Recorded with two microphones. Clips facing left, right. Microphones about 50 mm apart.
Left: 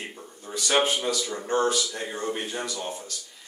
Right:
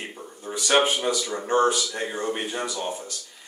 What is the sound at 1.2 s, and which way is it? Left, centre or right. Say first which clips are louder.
Speech: right 5 dB; centre.